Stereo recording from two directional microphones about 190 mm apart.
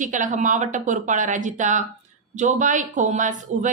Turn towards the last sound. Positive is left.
turn(degrees=-40)  # may be behind; listen again after turning